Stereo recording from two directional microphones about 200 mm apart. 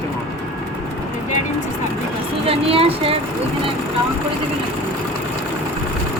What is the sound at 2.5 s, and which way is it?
Speech, 30° right (ahead or behind).